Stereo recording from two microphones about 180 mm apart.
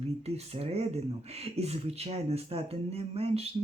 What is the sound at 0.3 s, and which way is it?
Speech, 35° right (ahead or behind).